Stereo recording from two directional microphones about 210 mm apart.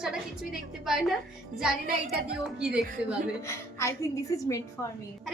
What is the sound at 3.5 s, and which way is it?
Speech, 15° left (ahead or behind).